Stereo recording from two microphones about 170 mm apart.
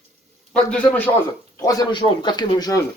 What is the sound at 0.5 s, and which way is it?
Speech, 5° left (ahead or behind).